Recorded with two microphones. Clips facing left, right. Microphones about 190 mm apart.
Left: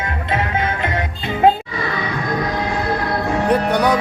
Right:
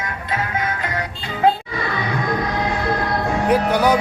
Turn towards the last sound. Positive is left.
turn(degrees=-5)  # may be behind; listen again after turning